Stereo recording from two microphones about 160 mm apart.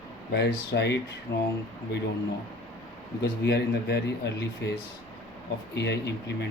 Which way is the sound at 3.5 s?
90° left.